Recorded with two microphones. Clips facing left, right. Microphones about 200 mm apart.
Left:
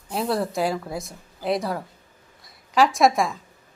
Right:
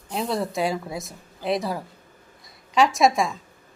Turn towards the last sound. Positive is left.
turn(degrees=0)  # may be behind; listen again after turning